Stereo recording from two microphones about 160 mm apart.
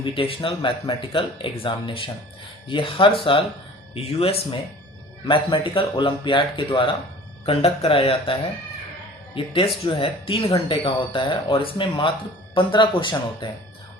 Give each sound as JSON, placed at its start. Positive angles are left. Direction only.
{"t": 0.0, "sound": "speech", "side_deg": 35}